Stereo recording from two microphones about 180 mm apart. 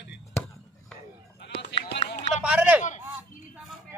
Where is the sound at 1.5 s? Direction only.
65° left (ahead or behind).